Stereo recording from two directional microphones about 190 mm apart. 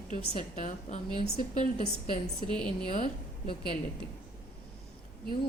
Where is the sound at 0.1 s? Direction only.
40° left (ahead or behind).